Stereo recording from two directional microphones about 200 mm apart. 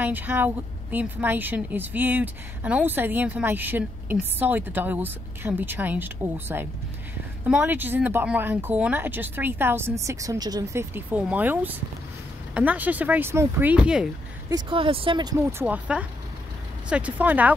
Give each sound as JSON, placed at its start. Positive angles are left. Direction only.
{"t": 0.0, "sound": "a woman's voice", "side_deg": -10}
{"t": 14.5, "sound": "a woman's voice", "side_deg": -25}